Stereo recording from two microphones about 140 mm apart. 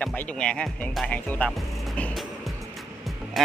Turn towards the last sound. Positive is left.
turn(degrees=0)  # may be behind; listen again after turning